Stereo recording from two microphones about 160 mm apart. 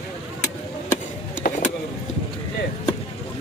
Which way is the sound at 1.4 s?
65° left (ahead or behind).